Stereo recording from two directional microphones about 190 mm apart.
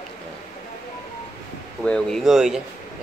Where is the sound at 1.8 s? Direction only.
5° left (ahead or behind).